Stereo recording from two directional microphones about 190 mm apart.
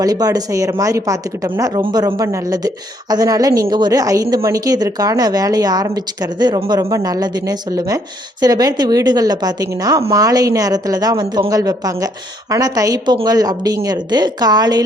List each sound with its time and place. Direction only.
0.0 s speech: 20° right (ahead or behind)